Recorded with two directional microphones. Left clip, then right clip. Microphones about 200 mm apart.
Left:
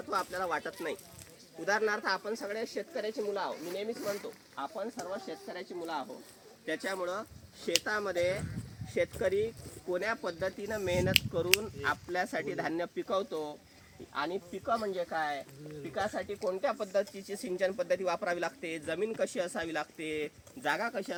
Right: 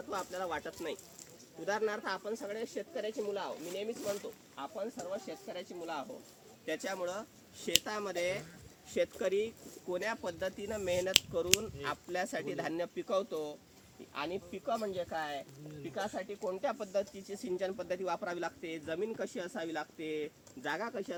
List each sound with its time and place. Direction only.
0.1 s speech: centre (ahead or behind)
3.9 s speech: 40° right (ahead or behind)
4.5 s speech: 20° right (ahead or behind)
5.5 s speech: 40° right (ahead or behind)
14.2 s speech: 20° right (ahead or behind); by 15.4 s 5° right (ahead or behind)
16.0 s speech: 10° left (ahead or behind)
16.6 s speech: 20° left (ahead or behind); by 21.2 s 55° left (ahead or behind)